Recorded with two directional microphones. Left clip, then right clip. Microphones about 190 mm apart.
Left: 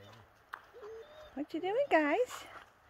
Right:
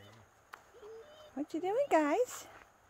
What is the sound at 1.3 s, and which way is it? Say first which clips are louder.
Speech: even; 15° right (ahead or behind).